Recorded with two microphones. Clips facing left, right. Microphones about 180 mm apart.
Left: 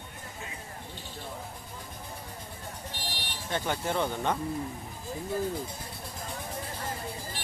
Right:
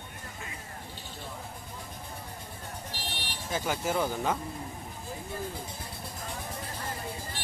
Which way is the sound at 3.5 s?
5° right (ahead or behind).